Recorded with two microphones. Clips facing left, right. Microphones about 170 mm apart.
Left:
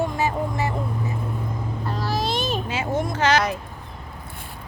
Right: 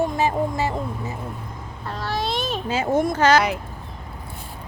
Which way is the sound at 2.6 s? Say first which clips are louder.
Right 4 dB; 35° right (ahead or behind).